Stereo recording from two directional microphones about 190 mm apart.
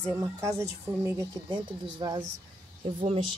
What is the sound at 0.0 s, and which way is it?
Speech, 15° right (ahead or behind).